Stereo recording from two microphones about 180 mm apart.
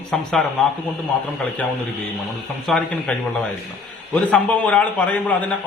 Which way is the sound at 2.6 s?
Centre (ahead or behind).